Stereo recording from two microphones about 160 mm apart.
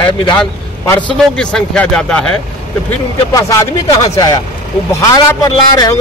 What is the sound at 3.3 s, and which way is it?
A man's voice, 20° left (ahead or behind).